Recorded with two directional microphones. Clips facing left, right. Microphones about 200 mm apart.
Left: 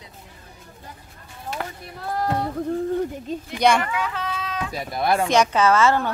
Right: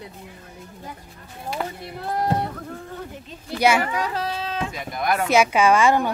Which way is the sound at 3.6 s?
5° right (ahead or behind).